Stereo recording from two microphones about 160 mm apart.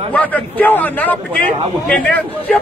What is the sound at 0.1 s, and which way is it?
A man's voice, 10° left (ahead or behind).